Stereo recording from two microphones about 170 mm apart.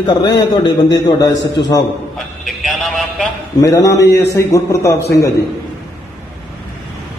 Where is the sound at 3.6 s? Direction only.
20° left (ahead or behind).